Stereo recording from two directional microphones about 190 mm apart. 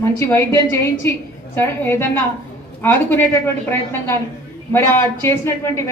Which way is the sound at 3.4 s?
10° left (ahead or behind).